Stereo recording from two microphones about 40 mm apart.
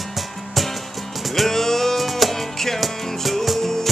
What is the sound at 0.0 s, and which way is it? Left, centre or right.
Music, centre.